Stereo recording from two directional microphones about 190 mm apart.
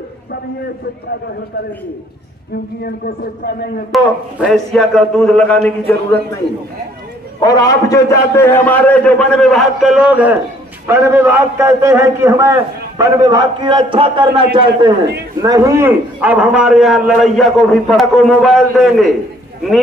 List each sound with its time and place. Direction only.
3.9 s a man's voice: centre (ahead or behind)
7.3 s a man's voice: 20° left (ahead or behind); by 19.1 s centre (ahead or behind)